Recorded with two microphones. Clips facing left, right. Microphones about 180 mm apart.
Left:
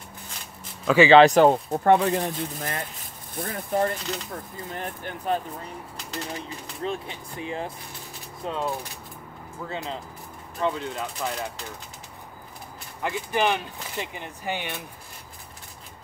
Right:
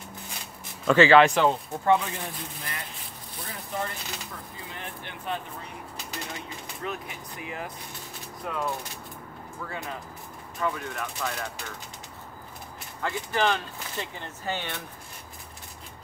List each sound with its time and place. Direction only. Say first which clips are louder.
0.8 s speech: left 1 dB; 10° left (ahead or behind)
1.1 s speech: left 4 dB; 40° left (ahead or behind)
6.3 s speech: left 3 dB; 30° left (ahead or behind)
13.0 s speech: left 2 dB; 15° left (ahead or behind)